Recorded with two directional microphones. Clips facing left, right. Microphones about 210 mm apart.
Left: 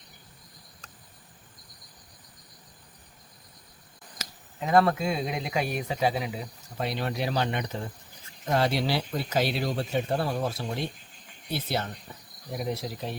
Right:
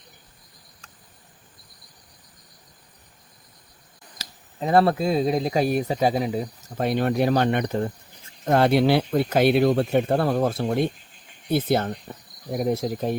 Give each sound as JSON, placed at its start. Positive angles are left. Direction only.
{"t": 4.2, "sound": "speech", "side_deg": -35}
{"t": 11.5, "sound": "cricket", "side_deg": -50}